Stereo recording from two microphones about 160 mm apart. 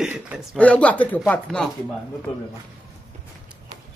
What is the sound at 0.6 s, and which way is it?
Speech, 10° left (ahead or behind).